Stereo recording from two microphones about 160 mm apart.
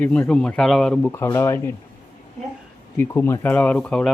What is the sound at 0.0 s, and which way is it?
Speech, 5° left (ahead or behind).